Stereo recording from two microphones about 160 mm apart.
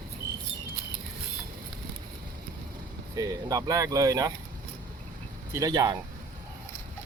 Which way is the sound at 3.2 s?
20° right (ahead or behind).